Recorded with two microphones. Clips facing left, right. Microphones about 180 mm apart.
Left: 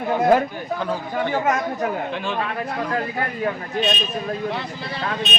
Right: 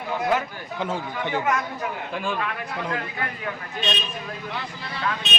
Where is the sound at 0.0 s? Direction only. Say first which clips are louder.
Left 7 dB; 50° left (ahead or behind).